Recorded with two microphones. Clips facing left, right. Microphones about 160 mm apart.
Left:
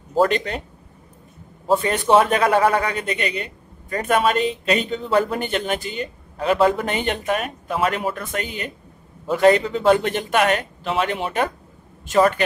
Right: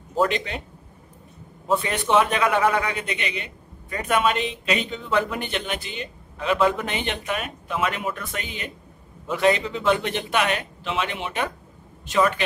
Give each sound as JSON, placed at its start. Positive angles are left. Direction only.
{"t": 0.2, "sound": "speech", "side_deg": 45}
{"t": 1.7, "sound": "a man's voice", "side_deg": 40}